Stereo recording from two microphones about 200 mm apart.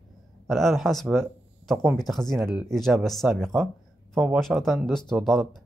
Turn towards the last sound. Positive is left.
turn(degrees=0)  # may be behind; listen again after turning